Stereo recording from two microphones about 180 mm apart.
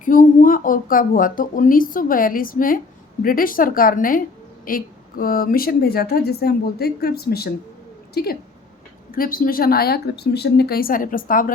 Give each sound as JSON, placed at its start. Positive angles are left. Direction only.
{"t": 0.0, "sound": "a woman's voice", "side_deg": 50}